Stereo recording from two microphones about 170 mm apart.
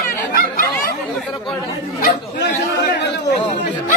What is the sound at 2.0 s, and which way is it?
Speech, 75° left (ahead or behind).